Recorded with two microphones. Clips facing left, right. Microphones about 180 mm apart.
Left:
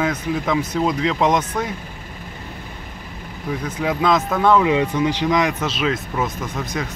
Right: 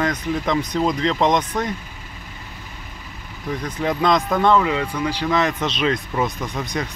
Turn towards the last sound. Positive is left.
turn(degrees=5)  # may be behind; listen again after turning